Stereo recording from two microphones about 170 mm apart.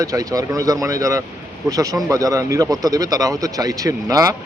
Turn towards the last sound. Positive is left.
turn(degrees=-20)  # may be behind; listen again after turning